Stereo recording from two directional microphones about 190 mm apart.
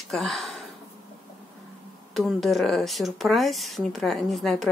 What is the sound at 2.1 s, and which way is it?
Speech, centre (ahead or behind).